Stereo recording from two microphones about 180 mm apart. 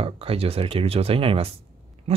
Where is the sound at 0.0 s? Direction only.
30° right (ahead or behind).